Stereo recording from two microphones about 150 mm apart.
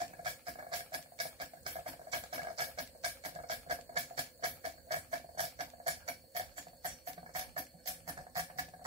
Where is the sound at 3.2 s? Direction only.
40° right (ahead or behind).